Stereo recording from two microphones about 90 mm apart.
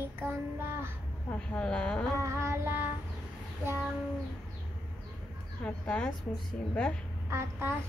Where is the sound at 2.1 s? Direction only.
35° right (ahead or behind).